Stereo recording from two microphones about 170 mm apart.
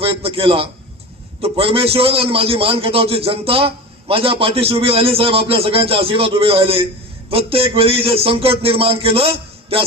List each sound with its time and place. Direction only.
0.0 s a man's voice: 35° right (ahead or behind)